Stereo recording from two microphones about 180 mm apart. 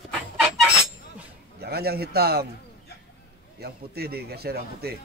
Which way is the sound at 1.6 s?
60° right (ahead or behind).